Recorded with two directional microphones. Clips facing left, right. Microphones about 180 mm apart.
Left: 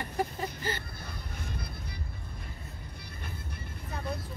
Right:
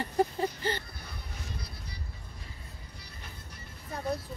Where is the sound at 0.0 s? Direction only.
30° right (ahead or behind).